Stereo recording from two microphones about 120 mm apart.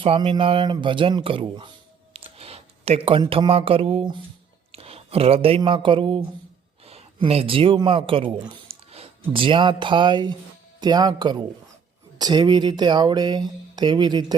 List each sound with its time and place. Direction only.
0.2 s speech: 45° right (ahead or behind)
2.1 s speech: 55° right (ahead or behind)
6.8 s speech: 55° right (ahead or behind); by 14.3 s 35° right (ahead or behind)